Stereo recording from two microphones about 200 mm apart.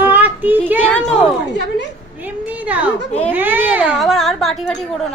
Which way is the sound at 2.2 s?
10° right (ahead or behind).